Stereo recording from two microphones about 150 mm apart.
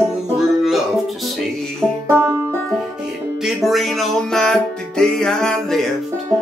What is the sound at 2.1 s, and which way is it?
Music, 15° right (ahead or behind).